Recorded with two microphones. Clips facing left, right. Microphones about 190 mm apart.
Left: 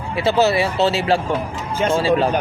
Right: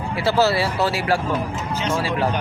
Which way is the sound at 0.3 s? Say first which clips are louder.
Left 2 dB; 20° left (ahead or behind).